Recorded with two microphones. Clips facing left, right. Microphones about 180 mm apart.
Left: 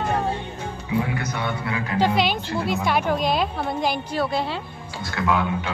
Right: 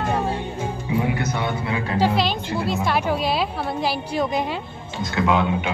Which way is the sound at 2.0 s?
5° right (ahead or behind).